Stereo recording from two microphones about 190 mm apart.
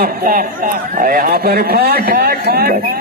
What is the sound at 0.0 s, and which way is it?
A man's voice, 50° right (ahead or behind).